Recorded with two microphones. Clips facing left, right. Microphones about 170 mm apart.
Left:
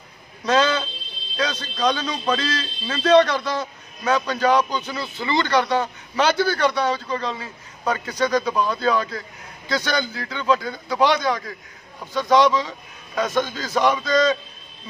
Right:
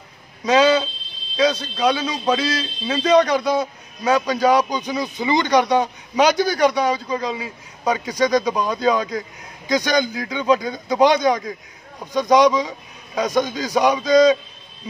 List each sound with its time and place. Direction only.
0.5 s a man's voice: 10° right (ahead or behind)